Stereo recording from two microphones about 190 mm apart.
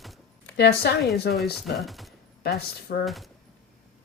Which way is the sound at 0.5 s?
60° left (ahead or behind).